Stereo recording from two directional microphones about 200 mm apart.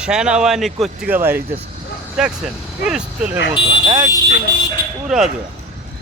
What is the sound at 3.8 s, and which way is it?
Speech, 20° right (ahead or behind).